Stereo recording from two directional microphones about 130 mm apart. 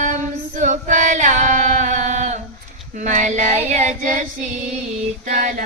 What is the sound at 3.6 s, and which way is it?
Child singing, 70° right (ahead or behind).